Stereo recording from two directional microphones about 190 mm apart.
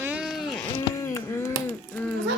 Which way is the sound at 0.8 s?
15° left (ahead or behind).